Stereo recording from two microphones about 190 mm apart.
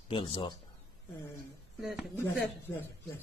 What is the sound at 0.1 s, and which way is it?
Speech, 25° left (ahead or behind).